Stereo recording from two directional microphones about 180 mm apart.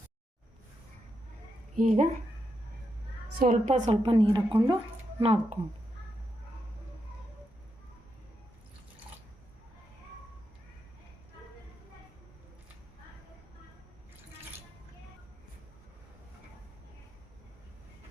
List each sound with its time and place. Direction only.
1.7 s speech: 45° right (ahead or behind)
3.3 s speech: 45° right (ahead or behind)
4.0 s a woman's voice: 30° right (ahead or behind)